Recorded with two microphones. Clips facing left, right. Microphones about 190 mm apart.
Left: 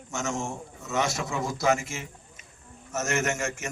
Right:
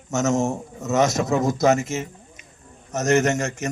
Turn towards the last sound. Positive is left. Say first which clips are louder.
# right 7 dB
turn(degrees=-40)  # may be behind; listen again after turning